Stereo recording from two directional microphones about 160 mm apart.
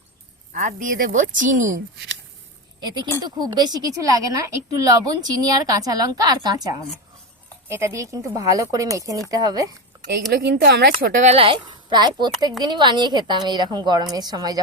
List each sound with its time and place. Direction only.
0.5 s a woman's voice: 55° right (ahead or behind)
2.8 s a woman's voice: 30° right (ahead or behind)
7.7 s a woman's voice: 20° right (ahead or behind)
10.3 s speech: 90° right; by 11.3 s 60° right (ahead or behind)
11.3 s a woman's voice: 35° right (ahead or behind)